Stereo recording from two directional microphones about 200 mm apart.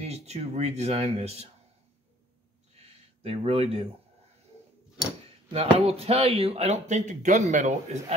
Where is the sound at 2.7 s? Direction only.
30° right (ahead or behind).